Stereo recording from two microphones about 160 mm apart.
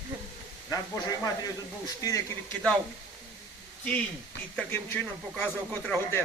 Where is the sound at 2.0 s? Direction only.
20° left (ahead or behind).